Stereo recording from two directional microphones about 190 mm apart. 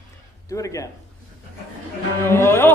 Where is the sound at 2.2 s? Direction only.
15° left (ahead or behind).